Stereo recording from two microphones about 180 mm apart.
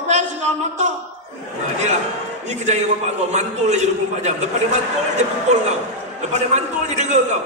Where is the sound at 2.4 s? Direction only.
40° right (ahead or behind).